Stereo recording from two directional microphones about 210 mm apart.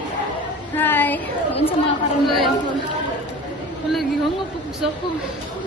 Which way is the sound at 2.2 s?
Centre (ahead or behind).